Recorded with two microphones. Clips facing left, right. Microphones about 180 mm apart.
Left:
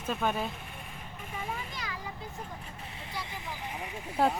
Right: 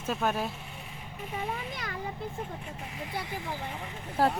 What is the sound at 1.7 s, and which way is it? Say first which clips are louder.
Speech: right 2 dB; 55° right (ahead or behind).